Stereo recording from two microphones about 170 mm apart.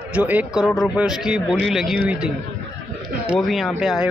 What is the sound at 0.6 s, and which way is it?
Speech, 10° left (ahead or behind).